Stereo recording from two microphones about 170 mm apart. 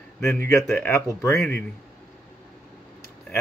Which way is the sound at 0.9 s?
15° left (ahead or behind).